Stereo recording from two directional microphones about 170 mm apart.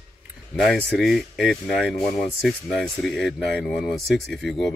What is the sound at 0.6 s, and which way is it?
Speech, centre (ahead or behind).